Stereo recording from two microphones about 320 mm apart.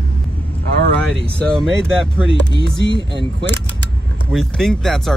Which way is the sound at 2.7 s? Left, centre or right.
Left.